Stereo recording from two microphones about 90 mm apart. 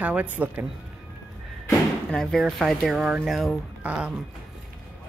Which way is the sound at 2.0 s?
5° left (ahead or behind).